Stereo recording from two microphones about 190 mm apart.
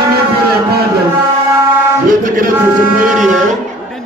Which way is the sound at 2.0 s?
45° right (ahead or behind).